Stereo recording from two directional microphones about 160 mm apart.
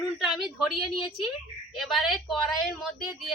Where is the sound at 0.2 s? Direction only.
Centre (ahead or behind).